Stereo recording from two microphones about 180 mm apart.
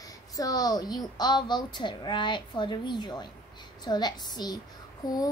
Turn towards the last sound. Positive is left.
turn(degrees=20)  # may be behind; listen again after turning